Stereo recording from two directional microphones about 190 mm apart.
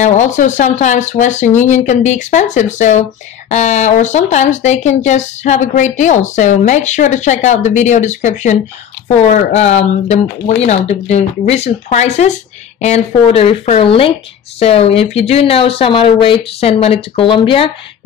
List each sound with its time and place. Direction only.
0.0 s speech: 40° left (ahead or behind)